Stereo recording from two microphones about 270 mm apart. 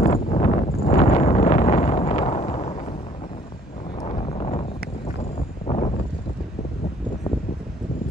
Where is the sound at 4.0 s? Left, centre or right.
Left.